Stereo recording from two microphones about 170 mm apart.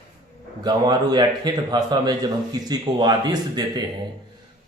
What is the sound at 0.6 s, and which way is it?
A man's voice, 25° right (ahead or behind).